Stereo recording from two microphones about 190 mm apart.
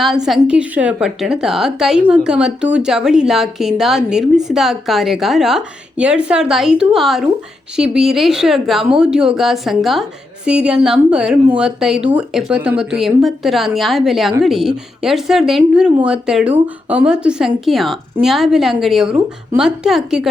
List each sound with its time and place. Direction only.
0.0 s a woman's voice: centre (ahead or behind)